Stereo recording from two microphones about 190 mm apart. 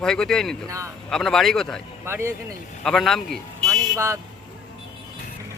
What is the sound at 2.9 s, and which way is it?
Speech, centre (ahead or behind).